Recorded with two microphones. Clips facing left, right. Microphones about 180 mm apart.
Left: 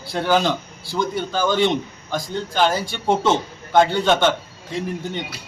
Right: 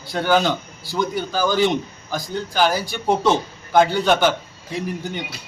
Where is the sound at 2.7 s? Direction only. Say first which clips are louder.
Even; 25° left (ahead or behind).